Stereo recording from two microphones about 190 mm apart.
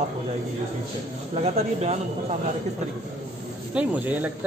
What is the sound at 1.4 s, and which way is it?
Speech, 35° right (ahead or behind).